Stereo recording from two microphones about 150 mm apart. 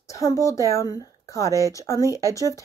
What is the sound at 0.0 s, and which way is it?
A woman's voice, 20° left (ahead or behind).